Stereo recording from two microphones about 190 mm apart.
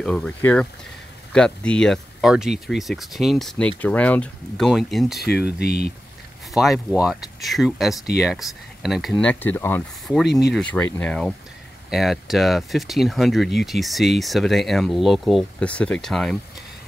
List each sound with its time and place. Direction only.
0.0 s speech: 5° left (ahead or behind)
5.2 s speech: 55° left (ahead or behind)
6.5 s speech: centre (ahead or behind)